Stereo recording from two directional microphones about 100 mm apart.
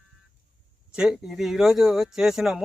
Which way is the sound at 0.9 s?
5° right (ahead or behind).